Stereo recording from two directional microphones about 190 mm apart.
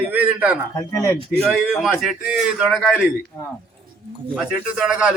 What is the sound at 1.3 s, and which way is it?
A man's voice, centre (ahead or behind).